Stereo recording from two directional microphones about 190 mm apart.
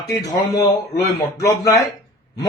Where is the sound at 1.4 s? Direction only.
15° left (ahead or behind).